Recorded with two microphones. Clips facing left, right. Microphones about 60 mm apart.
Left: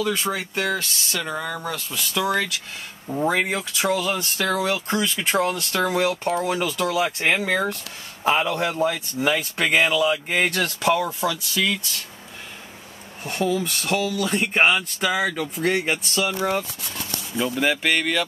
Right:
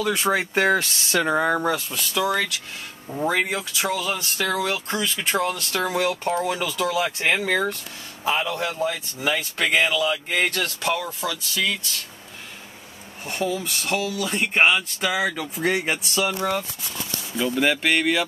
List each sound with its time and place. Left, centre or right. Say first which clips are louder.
0.0 s speech: right 1 dB; centre
0.3 s speech: right 5 dB; right
1.9 s speech: even; centre
6.3 s speech: left 1 dB; centre
6.6 s speech: left 1 dB; centre
8.2 s a man's voice: left 3 dB; left
9.2 s speech: left 2 dB; centre
13.2 s speech: left 3 dB; centre
17.4 s speech: right 1 dB; centre